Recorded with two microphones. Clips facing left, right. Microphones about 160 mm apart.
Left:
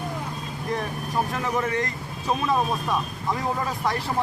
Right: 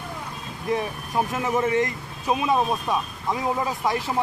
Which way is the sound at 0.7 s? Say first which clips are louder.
Right 3 dB; 20° right (ahead or behind).